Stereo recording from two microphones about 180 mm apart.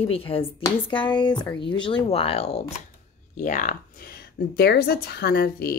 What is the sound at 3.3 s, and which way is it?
Speech, 45° left (ahead or behind).